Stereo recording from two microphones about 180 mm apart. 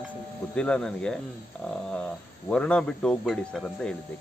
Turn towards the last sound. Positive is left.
turn(degrees=5)  # may be behind; listen again after turning